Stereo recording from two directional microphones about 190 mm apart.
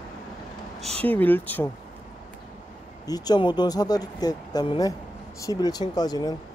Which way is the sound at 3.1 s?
20° left (ahead or behind).